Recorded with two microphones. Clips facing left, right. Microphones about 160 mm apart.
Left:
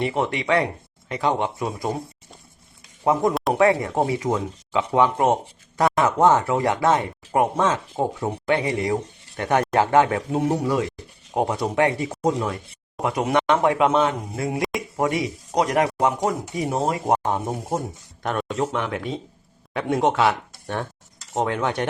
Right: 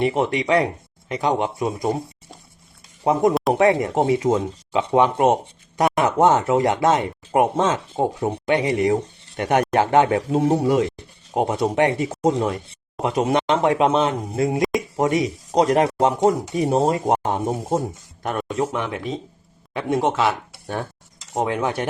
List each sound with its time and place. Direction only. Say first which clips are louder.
0.0 s speech: right 3 dB; 20° right (ahead or behind)
3.0 s speech: right 2 dB; 20° right (ahead or behind)
17.2 s speech: right 2 dB; 20° right (ahead or behind)
18.2 s speech: right 1 dB; 5° right (ahead or behind)